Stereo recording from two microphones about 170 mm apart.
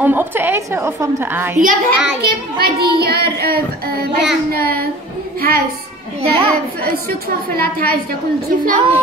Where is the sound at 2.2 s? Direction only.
65° right (ahead or behind).